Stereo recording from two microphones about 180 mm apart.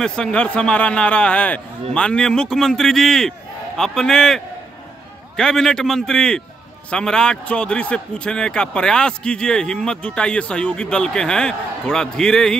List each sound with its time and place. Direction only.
0.0 s a man's voice: 5° left (ahead or behind)